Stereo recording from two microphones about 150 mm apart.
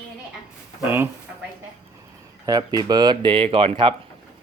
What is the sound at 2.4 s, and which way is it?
Speech, 25° right (ahead or behind).